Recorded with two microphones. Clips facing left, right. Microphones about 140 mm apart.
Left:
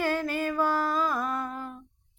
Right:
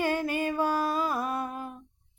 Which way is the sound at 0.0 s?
15° right (ahead or behind).